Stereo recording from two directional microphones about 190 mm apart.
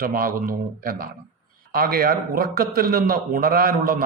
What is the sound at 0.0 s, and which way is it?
A man's voice, 50° right (ahead or behind).